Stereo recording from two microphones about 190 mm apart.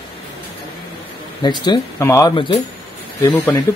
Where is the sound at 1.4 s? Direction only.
25° left (ahead or behind).